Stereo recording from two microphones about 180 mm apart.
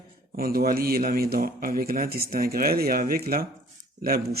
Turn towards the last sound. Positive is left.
turn(degrees=-55)  # may be behind; listen again after turning